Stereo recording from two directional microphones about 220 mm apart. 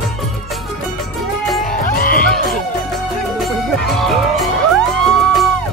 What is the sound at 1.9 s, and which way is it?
Music, 40° left (ahead or behind).